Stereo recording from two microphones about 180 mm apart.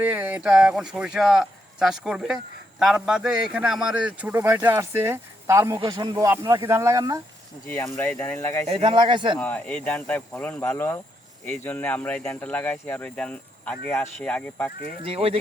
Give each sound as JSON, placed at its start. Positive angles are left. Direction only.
{"t": 0.0, "sound": "a man's voice", "side_deg": -10}
{"t": 7.7, "sound": "speech", "side_deg": 10}
{"t": 8.6, "sound": "speech", "side_deg": -30}
{"t": 9.4, "sound": "speech", "side_deg": 10}
{"t": 15.0, "sound": "speech", "side_deg": -30}